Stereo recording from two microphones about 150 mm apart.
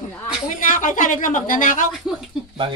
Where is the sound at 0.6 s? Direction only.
60° left (ahead or behind).